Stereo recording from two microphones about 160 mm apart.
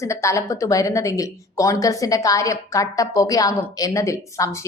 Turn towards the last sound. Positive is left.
turn(degrees=20)  # may be behind; listen again after turning